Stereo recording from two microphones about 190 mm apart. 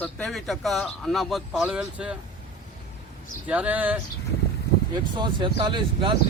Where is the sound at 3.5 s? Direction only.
5° right (ahead or behind).